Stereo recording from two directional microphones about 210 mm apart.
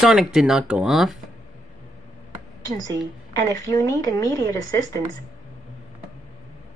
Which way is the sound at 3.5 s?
15° left (ahead or behind).